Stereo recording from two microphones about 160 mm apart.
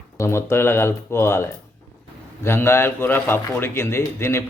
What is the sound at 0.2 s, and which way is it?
A man's voice, 15° left (ahead or behind).